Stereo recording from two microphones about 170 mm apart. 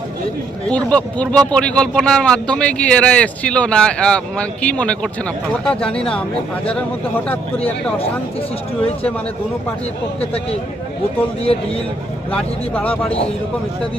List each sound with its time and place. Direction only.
0.7 s speech: 5° left (ahead or behind)
12.3 s speech: 10° left (ahead or behind)